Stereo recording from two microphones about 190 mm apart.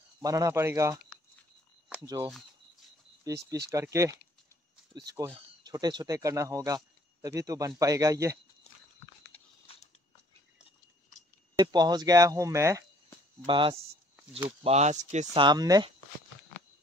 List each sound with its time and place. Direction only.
0.2 s speech: 15° right (ahead or behind)
2.0 s speech: 20° right (ahead or behind)
11.5 s speech: 20° right (ahead or behind)
13.5 s speech: 25° right (ahead or behind)
15.3 s speech: 20° right (ahead or behind)